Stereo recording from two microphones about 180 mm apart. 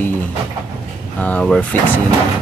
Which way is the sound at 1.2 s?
5° left (ahead or behind).